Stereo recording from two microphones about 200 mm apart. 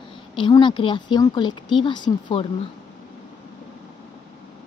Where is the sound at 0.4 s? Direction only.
25° left (ahead or behind).